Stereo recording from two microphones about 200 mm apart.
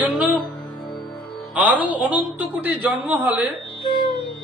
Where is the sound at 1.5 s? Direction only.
10° right (ahead or behind).